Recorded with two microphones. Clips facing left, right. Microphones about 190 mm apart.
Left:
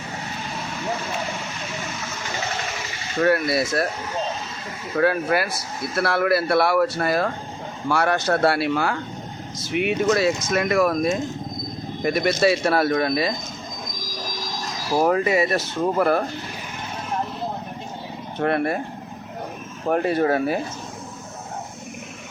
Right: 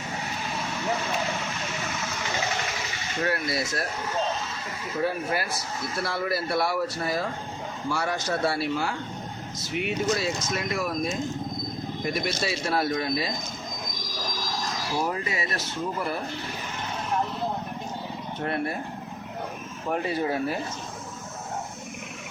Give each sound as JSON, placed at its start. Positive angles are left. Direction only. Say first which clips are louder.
{"t": 3.2, "sound": "speech", "louder": "left 8 dB", "side_deg": 65}
{"t": 4.9, "sound": "speech", "louder": "left 7 dB", "side_deg": 70}
{"t": 14.9, "sound": "speech", "louder": "left 11 dB", "side_deg": 60}
{"t": 18.3, "sound": "speech", "louder": "left 8 dB", "side_deg": 70}
{"t": 19.8, "sound": "speech", "louder": "left 7 dB", "side_deg": 50}